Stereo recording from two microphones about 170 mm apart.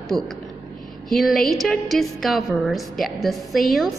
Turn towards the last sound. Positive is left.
turn(degrees=0)  # may be behind; listen again after turning